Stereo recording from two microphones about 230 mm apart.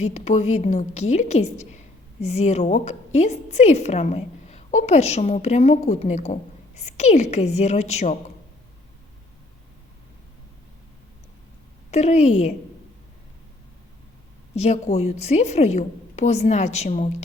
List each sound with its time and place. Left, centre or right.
0.1 s a woman's voice: left
11.9 s a woman's voice: left
14.5 s a woman's voice: left